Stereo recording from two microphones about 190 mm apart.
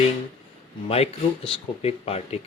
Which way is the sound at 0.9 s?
30° left (ahead or behind).